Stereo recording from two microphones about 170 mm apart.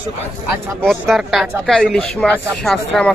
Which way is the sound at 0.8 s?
Centre (ahead or behind).